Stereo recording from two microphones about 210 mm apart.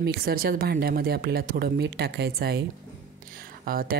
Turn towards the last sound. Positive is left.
turn(degrees=-45)  # may be behind; listen again after turning